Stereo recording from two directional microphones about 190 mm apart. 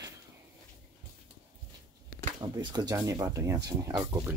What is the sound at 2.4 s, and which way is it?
Speech, 20° right (ahead or behind).